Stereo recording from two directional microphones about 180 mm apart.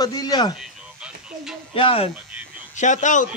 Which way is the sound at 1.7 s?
30° left (ahead or behind).